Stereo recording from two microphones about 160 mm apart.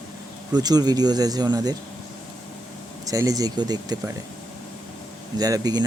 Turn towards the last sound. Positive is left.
turn(degrees=-25)  # may be behind; listen again after turning